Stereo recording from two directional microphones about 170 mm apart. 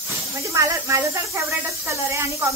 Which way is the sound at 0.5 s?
20° right (ahead or behind).